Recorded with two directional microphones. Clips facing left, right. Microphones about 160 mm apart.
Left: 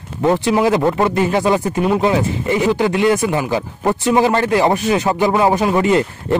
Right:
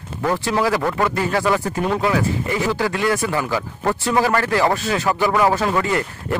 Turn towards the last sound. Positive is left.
turn(degrees=20)  # may be behind; listen again after turning